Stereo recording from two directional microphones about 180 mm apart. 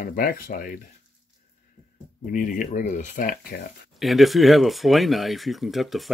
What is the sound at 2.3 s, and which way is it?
Speech, 45° left (ahead or behind).